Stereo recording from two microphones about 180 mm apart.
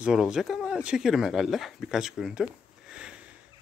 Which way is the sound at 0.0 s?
5° right (ahead or behind).